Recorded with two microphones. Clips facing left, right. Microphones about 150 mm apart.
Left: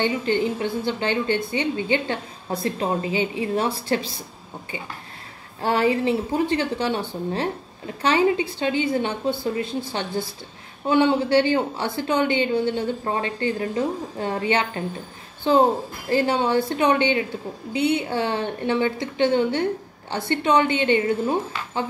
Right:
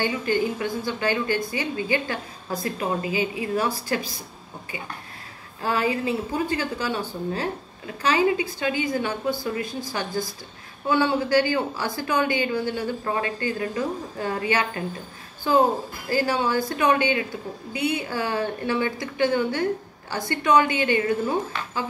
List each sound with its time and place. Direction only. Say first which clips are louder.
0.0 s a woman's voice: left 2 dB; 25° left (ahead or behind)
5.6 s a woman's voice: left 4 dB; 30° left (ahead or behind)